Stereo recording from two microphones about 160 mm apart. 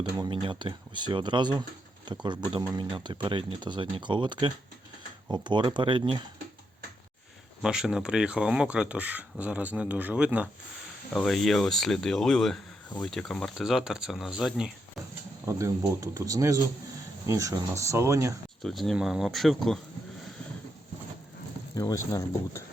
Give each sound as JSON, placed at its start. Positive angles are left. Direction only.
{"t": 0.0, "sound": "speech", "side_deg": -25}
{"t": 7.6, "sound": "speech", "side_deg": -5}
{"t": 15.4, "sound": "speech", "side_deg": -20}
{"t": 18.6, "sound": "speech", "side_deg": 0}
{"t": 21.8, "sound": "speech", "side_deg": 20}